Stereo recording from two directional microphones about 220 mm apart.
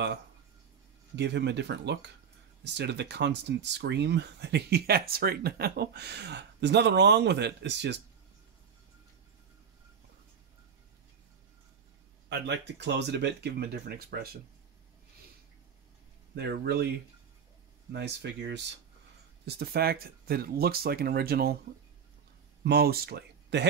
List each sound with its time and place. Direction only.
1.1 s speech: 50° right (ahead or behind)
12.3 s speech: 50° right (ahead or behind)
16.3 s speech: 45° right (ahead or behind)
17.9 s speech: 50° right (ahead or behind)
22.6 s speech: 45° right (ahead or behind)